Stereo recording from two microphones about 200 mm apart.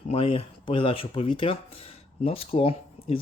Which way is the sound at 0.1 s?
30° left (ahead or behind).